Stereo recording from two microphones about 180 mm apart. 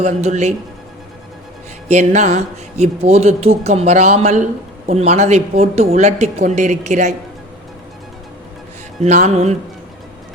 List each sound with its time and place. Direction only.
0.0 s speech: 40° right (ahead or behind)
1.9 s speech: 40° right (ahead or behind)
9.0 s speech: 40° right (ahead or behind)